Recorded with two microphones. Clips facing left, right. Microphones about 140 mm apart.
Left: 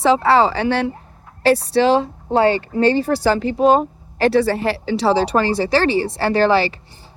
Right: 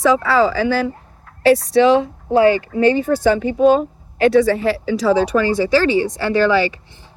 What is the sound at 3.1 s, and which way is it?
Speech, 75° left (ahead or behind).